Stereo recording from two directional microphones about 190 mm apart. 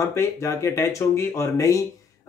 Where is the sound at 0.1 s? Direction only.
15° left (ahead or behind).